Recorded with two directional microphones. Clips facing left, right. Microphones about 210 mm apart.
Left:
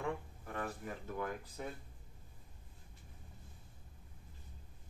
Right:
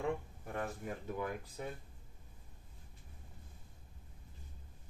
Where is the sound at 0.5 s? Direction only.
25° right (ahead or behind).